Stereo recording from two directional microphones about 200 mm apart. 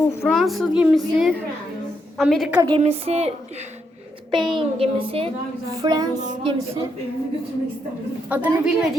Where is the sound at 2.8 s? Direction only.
30° right (ahead or behind).